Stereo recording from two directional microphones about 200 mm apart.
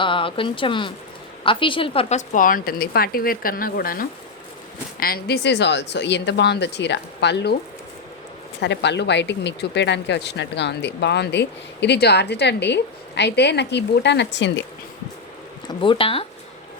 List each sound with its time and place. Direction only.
0.0 s a woman's voice: 25° left (ahead or behind); by 7.5 s 60° left (ahead or behind)
8.6 s speech: 60° left (ahead or behind)
15.6 s speech: 25° left (ahead or behind)